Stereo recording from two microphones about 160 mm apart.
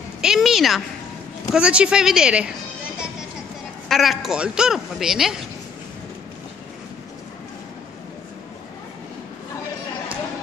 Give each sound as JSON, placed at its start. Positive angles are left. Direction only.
{"t": 0.2, "sound": "a man's voice", "side_deg": -5}
{"t": 3.9, "sound": "a man's voice", "side_deg": 0}